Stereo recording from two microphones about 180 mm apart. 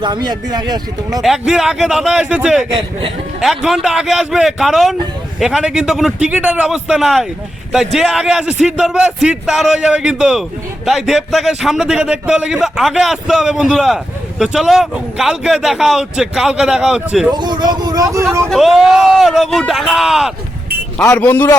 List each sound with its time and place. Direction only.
0.0 s speech: 25° right (ahead or behind)
1.2 s a man's voice: centre (ahead or behind)
17.3 s speech: 25° right (ahead or behind)
18.4 s a man's voice: centre (ahead or behind)
21.0 s a man's voice: 15° left (ahead or behind)